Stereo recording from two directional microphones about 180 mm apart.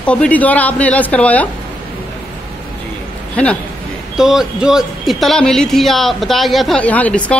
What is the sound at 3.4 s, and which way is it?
A woman's voice, 5° left (ahead or behind).